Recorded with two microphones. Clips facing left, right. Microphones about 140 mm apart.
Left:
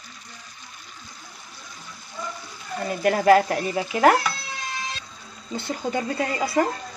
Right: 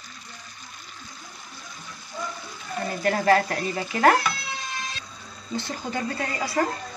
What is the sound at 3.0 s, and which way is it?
Speech, 15° left (ahead or behind).